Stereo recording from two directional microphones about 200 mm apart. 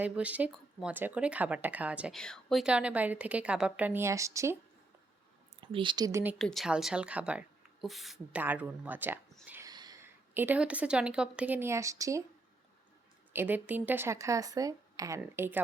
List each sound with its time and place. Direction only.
0.0 s speech: 5° right (ahead or behind)
5.5 s speech: 25° right (ahead or behind)
6.4 s speech: centre (ahead or behind); by 12.2 s 15° right (ahead or behind)
13.3 s speech: 10° right (ahead or behind)